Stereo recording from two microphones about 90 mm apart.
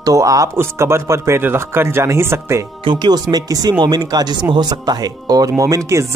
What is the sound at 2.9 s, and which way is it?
Speech, 55° right (ahead or behind).